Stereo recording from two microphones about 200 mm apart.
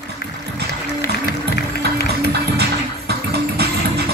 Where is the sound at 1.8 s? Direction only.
55° right (ahead or behind).